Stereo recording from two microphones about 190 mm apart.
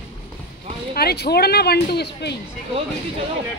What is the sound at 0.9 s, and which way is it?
Speech, 55° left (ahead or behind).